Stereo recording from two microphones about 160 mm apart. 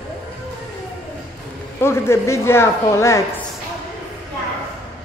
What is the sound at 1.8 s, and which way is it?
A man's voice, 15° left (ahead or behind).